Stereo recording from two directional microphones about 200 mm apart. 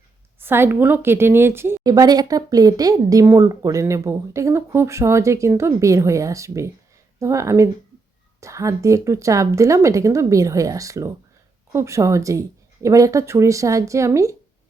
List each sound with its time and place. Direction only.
0.3 s a woman's voice: 10° right (ahead or behind)